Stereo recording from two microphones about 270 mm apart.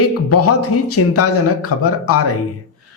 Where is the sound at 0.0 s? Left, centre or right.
Left.